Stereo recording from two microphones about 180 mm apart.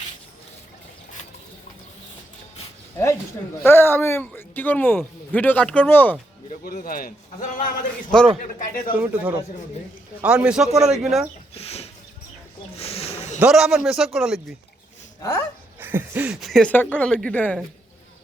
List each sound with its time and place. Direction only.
3.6 s speech: 10° left (ahead or behind)
6.5 s speech: 50° left (ahead or behind)
9.0 s a man's voice: 5° right (ahead or behind)
11.5 s chicken: 35° left (ahead or behind)
12.7 s snake: 35° left (ahead or behind)
13.4 s speech: 5° right (ahead or behind)
15.2 s speech: 15° left (ahead or behind)
15.8 s speech: 10° right (ahead or behind); by 17.7 s 10° left (ahead or behind)